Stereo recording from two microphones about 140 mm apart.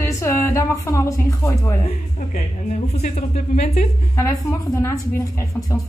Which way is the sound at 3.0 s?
55° left (ahead or behind).